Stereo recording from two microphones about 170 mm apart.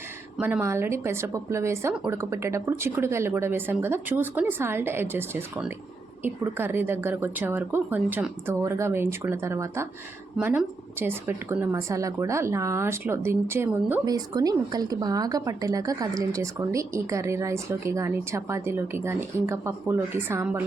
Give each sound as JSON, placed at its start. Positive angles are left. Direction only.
{"t": 0.3, "sound": "a woman's voice", "side_deg": -10}